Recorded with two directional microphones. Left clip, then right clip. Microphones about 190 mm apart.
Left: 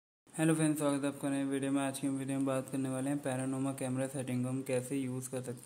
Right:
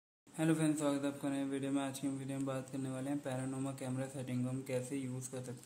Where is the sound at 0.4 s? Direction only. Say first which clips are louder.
Left 3 dB; 20° left (ahead or behind).